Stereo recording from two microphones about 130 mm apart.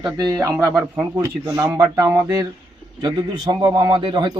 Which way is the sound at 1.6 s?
20° right (ahead or behind).